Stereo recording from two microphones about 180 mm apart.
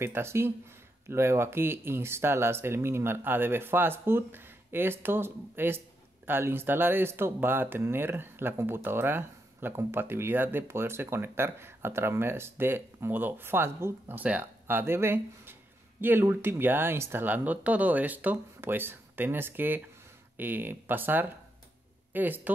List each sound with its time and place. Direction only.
0.0 s speech: 15° right (ahead or behind)